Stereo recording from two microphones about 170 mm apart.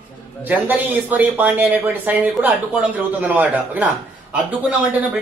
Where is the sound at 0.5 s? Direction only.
10° right (ahead or behind).